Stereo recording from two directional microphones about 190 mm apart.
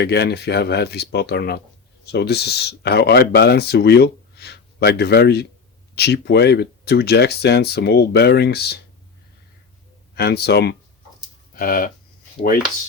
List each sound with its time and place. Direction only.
0.0 s speech: 60° left (ahead or behind)
10.2 s speech: 55° left (ahead or behind)